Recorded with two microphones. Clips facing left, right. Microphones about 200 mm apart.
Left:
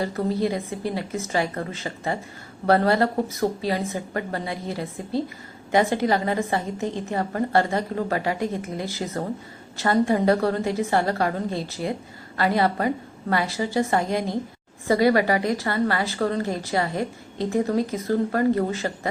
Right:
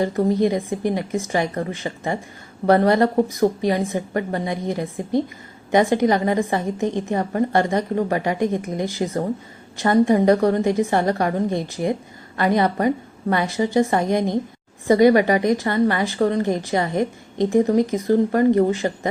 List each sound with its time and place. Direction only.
0.0 s a woman's voice: 20° right (ahead or behind)